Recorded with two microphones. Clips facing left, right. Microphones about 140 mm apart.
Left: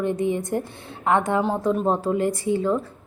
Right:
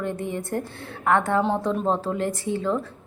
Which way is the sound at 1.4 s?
5° left (ahead or behind).